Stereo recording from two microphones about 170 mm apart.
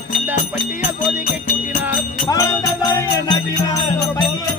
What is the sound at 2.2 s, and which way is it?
Music, 20° left (ahead or behind).